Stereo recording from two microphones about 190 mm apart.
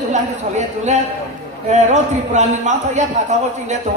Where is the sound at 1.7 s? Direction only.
40° right (ahead or behind).